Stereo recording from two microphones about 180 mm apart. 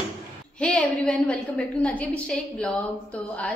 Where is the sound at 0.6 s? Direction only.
5° left (ahead or behind).